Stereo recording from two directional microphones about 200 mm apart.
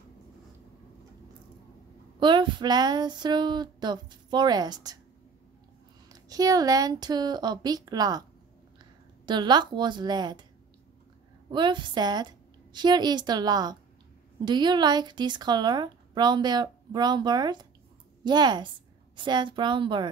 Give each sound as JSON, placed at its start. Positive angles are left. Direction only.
{"t": 2.1, "sound": "speech", "side_deg": -25}
{"t": 6.1, "sound": "speech", "side_deg": -20}
{"t": 9.2, "sound": "speech", "side_deg": -20}
{"t": 11.5, "sound": "speech", "side_deg": -25}